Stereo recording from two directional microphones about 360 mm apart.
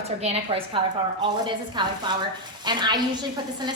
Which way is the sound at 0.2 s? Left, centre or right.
Centre.